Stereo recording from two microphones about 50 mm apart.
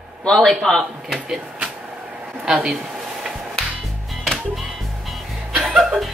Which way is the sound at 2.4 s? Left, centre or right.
Centre.